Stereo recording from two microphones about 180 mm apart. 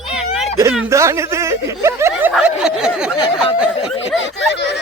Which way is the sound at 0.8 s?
15° right (ahead or behind).